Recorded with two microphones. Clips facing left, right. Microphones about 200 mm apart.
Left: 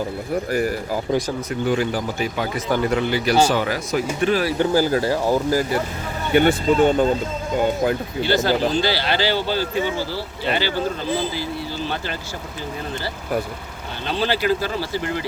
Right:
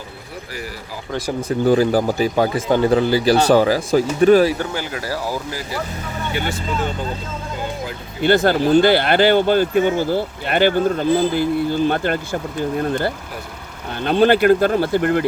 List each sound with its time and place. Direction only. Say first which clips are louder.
1.5 s speech: right 10 dB; 35° right (ahead or behind)
2.6 s speech: right 3 dB; 25° right (ahead or behind); by 4.4 s 45° right (ahead or behind)
4.7 s speech: left 9 dB; 35° left (ahead or behind)
5.0 s speech: left 5 dB; 25° left (ahead or behind)
6.3 s speech: left 10 dB; 55° left (ahead or behind)
8.2 s speech: right 5 dB; 55° right (ahead or behind)